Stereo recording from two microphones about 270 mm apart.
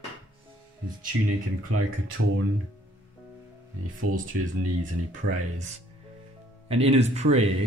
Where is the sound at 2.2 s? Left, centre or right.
Right.